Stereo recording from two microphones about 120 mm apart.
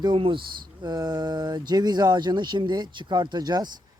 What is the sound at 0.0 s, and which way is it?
Speech, 45° right (ahead or behind).